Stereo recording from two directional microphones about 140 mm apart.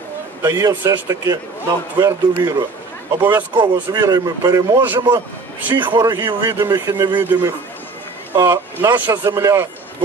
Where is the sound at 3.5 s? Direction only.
35° right (ahead or behind).